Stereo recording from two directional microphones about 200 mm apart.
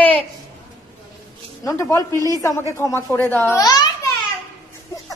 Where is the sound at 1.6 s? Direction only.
15° left (ahead or behind).